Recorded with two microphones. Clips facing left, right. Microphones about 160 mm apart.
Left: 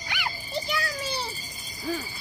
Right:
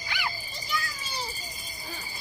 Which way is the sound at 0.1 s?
65° left (ahead or behind).